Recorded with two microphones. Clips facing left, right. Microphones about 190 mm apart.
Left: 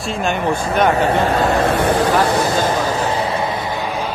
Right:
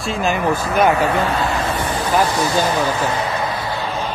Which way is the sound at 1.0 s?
35° left (ahead or behind).